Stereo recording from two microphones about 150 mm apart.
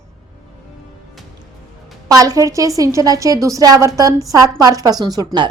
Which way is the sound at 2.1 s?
25° right (ahead or behind).